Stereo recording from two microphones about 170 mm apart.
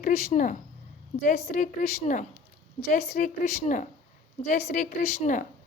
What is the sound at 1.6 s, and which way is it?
A woman's voice, 45° left (ahead or behind).